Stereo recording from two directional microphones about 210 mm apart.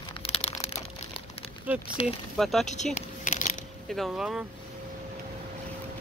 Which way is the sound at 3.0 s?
35° left (ahead or behind).